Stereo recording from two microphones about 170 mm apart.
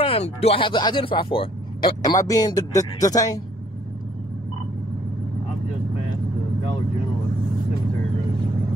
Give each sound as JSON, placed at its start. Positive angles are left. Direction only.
{"t": 0.0, "sound": "speech", "side_deg": 35}